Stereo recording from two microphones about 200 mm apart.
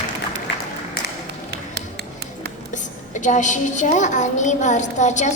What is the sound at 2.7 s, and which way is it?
A woman's voice, 40° left (ahead or behind).